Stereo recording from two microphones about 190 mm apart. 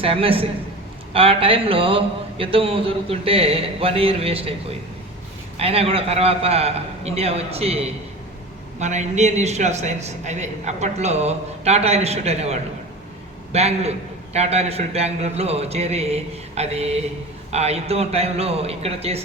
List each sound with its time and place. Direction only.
0.0 s a man's voice: 30° right (ahead or behind)